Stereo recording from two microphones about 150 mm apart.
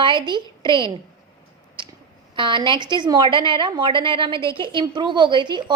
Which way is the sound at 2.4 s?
30° right (ahead or behind).